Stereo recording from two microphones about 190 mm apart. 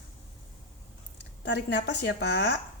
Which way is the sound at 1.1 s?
65° left (ahead or behind).